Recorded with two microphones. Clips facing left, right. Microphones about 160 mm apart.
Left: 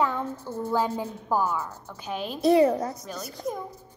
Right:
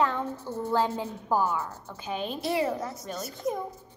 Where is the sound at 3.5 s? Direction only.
5° right (ahead or behind).